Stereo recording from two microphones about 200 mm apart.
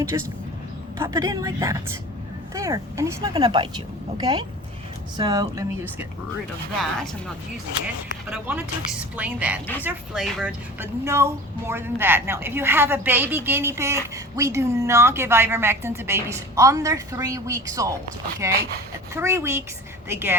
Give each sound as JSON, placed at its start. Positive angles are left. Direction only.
{"t": 0.1, "sound": "speech", "side_deg": -20}
{"t": 6.7, "sound": "speech", "side_deg": 0}
{"t": 8.3, "sound": "speech", "side_deg": -5}
{"t": 10.8, "sound": "speech", "side_deg": -15}